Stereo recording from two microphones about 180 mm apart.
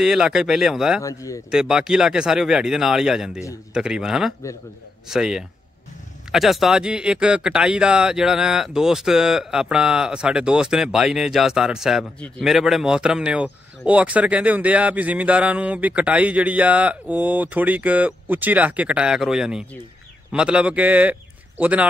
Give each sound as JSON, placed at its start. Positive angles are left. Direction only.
{"t": 0.0, "sound": "speech", "side_deg": -5}
{"t": 1.0, "sound": "speech", "side_deg": 20}
{"t": 1.5, "sound": "speech", "side_deg": -5}